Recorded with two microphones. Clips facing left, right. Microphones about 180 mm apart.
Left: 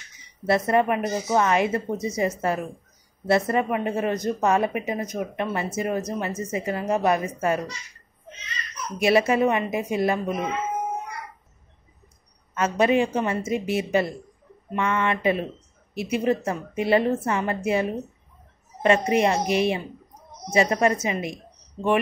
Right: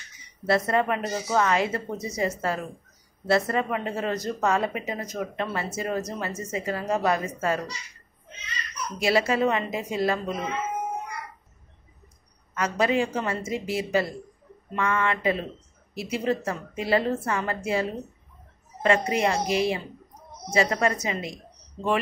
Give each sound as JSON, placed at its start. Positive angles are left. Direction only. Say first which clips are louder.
{"t": 0.5, "sound": "a woman's voice", "louder": "left 3 dB", "side_deg": 20}
{"t": 8.7, "sound": "a woman's voice", "louder": "left 4 dB", "side_deg": 20}
{"t": 12.5, "sound": "a woman's voice", "louder": "left 3 dB", "side_deg": 25}